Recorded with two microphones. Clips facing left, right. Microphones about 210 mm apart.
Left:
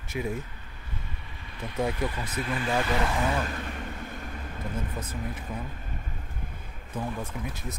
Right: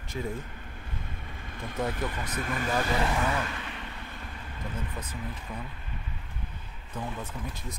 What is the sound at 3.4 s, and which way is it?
Vehicle, 45° left (ahead or behind).